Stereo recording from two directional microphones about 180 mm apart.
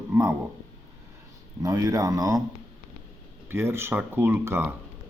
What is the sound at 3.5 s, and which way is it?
Speech, 15° right (ahead or behind).